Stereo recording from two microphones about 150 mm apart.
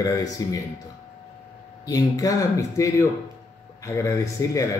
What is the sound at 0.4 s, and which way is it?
Speech, 25° left (ahead or behind).